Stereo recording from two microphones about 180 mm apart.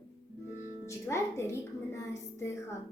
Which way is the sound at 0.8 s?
15° left (ahead or behind).